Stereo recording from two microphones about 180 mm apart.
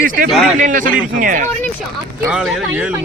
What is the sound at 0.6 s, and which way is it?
Speech, 50° right (ahead or behind).